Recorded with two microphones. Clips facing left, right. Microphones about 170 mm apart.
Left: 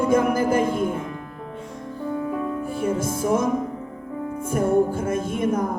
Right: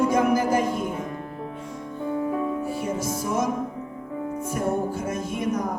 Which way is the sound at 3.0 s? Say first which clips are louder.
Left 4 dB; 55° left (ahead or behind).